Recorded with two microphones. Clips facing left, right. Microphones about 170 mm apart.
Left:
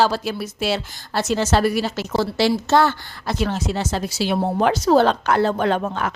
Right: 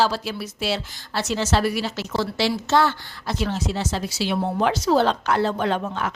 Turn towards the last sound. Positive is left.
turn(degrees=50)  # may be behind; listen again after turning